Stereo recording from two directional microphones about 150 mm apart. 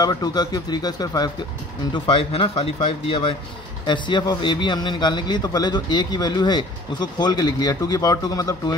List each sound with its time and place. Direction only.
0.0 s a man's voice: 25° left (ahead or behind)
2.0 s a man's voice: 35° left (ahead or behind)